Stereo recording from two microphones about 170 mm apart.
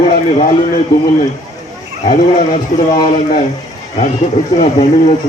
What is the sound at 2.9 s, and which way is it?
Speech, 30° left (ahead or behind).